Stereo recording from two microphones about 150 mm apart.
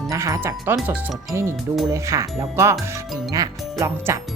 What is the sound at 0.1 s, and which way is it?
Speech, 20° right (ahead or behind).